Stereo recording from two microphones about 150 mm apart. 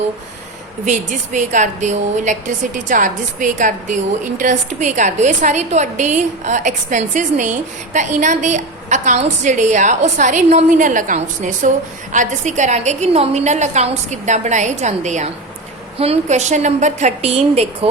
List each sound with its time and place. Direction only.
0.9 s a woman's voice: 55° right (ahead or behind)